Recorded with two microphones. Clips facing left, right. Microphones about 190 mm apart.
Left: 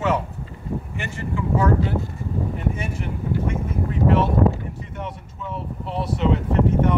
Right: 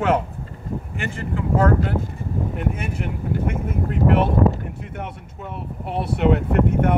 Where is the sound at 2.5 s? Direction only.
60° right (ahead or behind).